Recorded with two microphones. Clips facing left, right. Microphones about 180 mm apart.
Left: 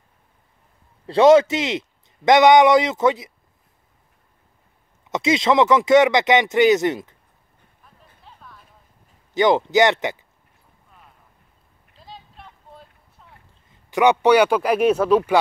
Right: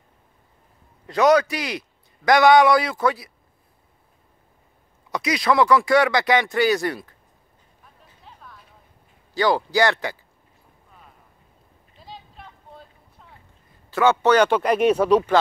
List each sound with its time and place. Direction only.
1.0 s a man's voice: 25° left (ahead or behind)
5.1 s speech: 25° left (ahead or behind)
8.3 s a sound: centre (ahead or behind)
9.3 s speech: 20° left (ahead or behind)
12.0 s a sound: centre (ahead or behind)
13.8 s speech: 15° left (ahead or behind)